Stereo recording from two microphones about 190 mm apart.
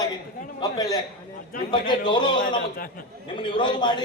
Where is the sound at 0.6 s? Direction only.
20° left (ahead or behind).